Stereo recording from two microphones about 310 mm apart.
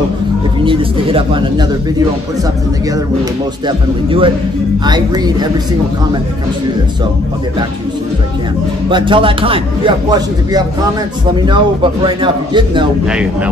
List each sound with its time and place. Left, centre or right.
0.7 s speech: centre
3.6 s speech: centre
8.9 s speech: centre
13.0 s speech: centre